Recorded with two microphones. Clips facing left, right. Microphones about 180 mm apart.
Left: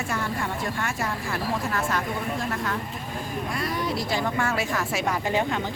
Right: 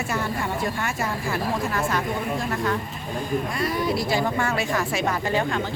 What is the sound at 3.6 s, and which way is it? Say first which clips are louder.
Speech: right 2 dB; 5° right (ahead or behind).